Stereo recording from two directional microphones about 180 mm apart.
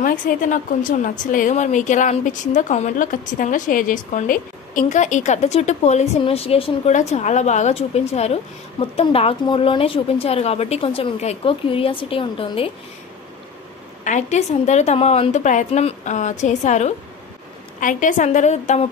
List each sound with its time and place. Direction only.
0.0 s a woman's voice: 50° left (ahead or behind); by 12.6 s 30° left (ahead or behind)
14.0 s a woman's voice: 40° left (ahead or behind)